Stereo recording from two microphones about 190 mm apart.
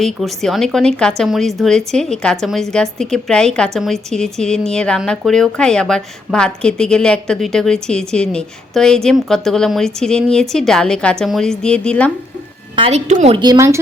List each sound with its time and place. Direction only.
0.0 s a woman's voice: centre (ahead or behind)
12.7 s a woman's voice: 30° right (ahead or behind)
13.3 s speech: 20° right (ahead or behind)